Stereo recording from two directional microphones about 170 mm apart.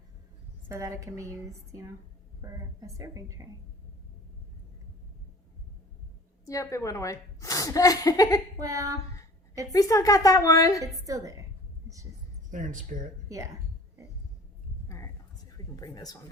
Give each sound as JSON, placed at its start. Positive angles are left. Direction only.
{"t": 0.7, "sound": "a woman's voice", "side_deg": -20}
{"t": 6.4, "sound": "a woman's voice", "side_deg": 20}
{"t": 8.5, "sound": "a woman's voice", "side_deg": -20}
{"t": 9.7, "sound": "a woman's voice", "side_deg": 20}
{"t": 11.0, "sound": "a woman's voice", "side_deg": -20}
{"t": 12.5, "sound": "speech", "side_deg": -50}
{"t": 13.2, "sound": "speech", "side_deg": -20}
{"t": 14.8, "sound": "a sound", "side_deg": 15}
{"t": 15.5, "sound": "speech", "side_deg": 20}